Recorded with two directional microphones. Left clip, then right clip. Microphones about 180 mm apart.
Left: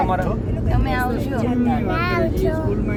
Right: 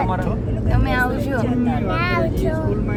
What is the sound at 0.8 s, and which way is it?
Speech, 35° right (ahead or behind).